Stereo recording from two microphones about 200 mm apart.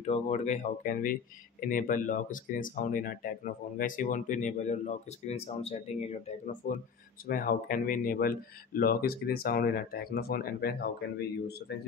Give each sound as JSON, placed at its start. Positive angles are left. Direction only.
{"t": 0.0, "sound": "speech", "side_deg": 35}